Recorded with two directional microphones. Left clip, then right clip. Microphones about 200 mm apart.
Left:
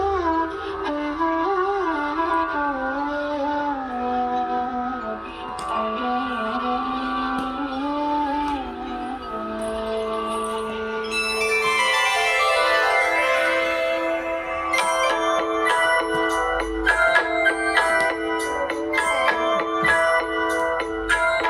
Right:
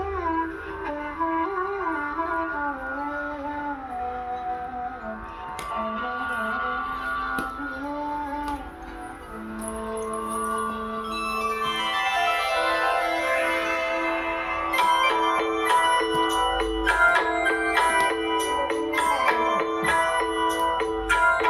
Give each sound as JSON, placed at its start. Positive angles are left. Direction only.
{"t": 0.0, "sound": "music", "side_deg": 55}
{"t": 11.3, "sound": "music", "side_deg": 60}
{"t": 13.4, "sound": "church bell", "side_deg": 30}
{"t": 14.7, "sound": "music", "side_deg": 30}